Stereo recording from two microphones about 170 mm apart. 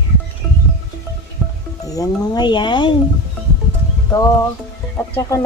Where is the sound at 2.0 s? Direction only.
25° left (ahead or behind).